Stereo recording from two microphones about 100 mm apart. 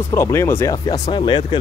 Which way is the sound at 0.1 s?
30° left (ahead or behind).